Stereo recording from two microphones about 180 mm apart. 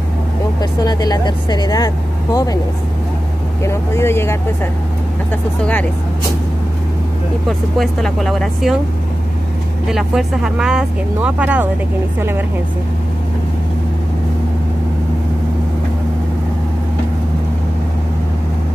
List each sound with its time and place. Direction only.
0.6 s speech: 20° left (ahead or behind)
3.6 s speech: 15° left (ahead or behind)
5.6 s speech: 10° left (ahead or behind)
7.4 s speech: centre (ahead or behind)
9.8 s a woman's voice: 5° right (ahead or behind)